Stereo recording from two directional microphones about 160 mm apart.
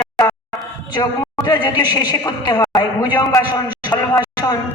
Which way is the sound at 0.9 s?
25° left (ahead or behind).